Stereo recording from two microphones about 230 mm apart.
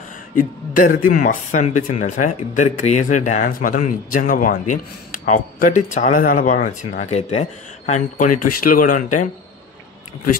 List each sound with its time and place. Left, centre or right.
0.7 s speech: left